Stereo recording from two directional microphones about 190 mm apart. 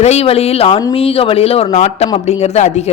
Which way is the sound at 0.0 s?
35° left (ahead or behind).